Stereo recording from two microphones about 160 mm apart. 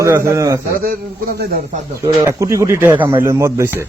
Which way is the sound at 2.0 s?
20° right (ahead or behind).